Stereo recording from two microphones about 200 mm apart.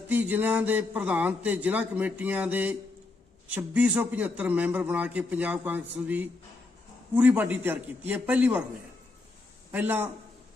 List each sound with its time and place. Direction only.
0.1 s a man's voice: 10° right (ahead or behind)
9.7 s a man's voice: 10° right (ahead or behind)